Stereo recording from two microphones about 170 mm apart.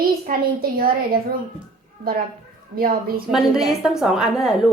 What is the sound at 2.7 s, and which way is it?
Speech, 60° right (ahead or behind).